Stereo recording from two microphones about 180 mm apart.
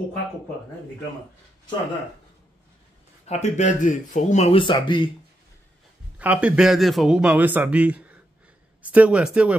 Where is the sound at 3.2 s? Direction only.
40° left (ahead or behind).